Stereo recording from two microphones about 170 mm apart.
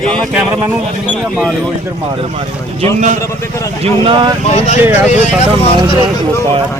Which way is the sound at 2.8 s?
45° right (ahead or behind).